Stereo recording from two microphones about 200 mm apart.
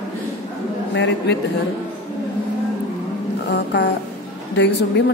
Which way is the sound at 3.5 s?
60° left (ahead or behind).